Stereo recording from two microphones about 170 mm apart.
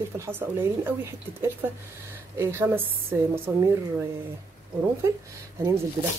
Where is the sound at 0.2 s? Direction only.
15° right (ahead or behind).